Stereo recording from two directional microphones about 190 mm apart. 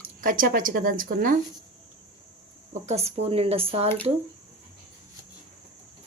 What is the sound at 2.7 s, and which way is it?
Speech, 35° right (ahead or behind).